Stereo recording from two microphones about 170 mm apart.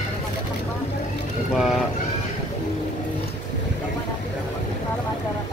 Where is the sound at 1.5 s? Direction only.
Centre (ahead or behind).